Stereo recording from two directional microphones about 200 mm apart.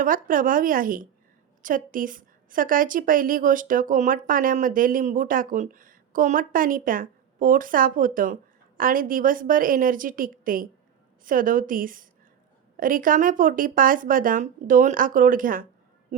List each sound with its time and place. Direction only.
0.0 s a woman's voice: 45° right (ahead or behind)